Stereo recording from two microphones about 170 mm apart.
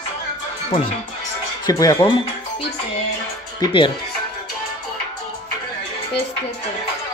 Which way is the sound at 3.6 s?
30° left (ahead or behind).